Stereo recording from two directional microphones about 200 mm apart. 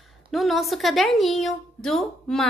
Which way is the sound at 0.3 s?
Centre (ahead or behind).